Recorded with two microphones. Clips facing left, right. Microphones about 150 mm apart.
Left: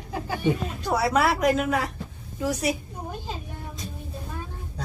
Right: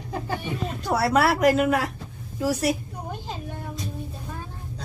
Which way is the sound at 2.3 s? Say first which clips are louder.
Right 2 dB; 5° right (ahead or behind).